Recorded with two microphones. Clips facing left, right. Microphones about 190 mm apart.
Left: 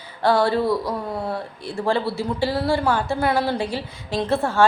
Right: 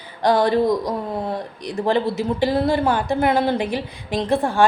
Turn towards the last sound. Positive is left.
turn(degrees=-15)  # may be behind; listen again after turning